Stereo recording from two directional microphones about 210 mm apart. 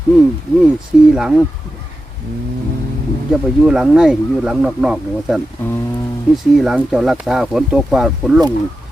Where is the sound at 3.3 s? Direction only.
5° right (ahead or behind).